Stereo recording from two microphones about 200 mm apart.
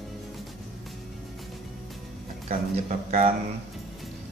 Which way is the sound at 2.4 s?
30° right (ahead or behind).